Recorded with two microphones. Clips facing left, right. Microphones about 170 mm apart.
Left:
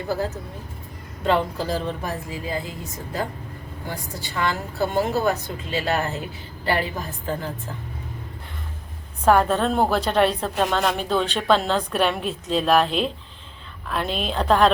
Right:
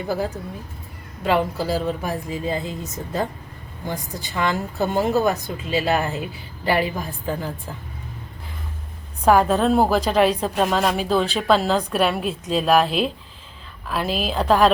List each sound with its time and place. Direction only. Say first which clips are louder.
0.1 s a woman's voice: right 1 dB; 10° right (ahead or behind)
2.3 s a woman's voice: right 4 dB; 25° right (ahead or behind)
9.2 s a woman's voice: right 2 dB; 5° right (ahead or behind)